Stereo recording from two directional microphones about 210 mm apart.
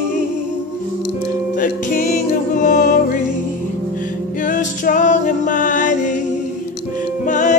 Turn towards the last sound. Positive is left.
turn(degrees=35)  # may be behind; listen again after turning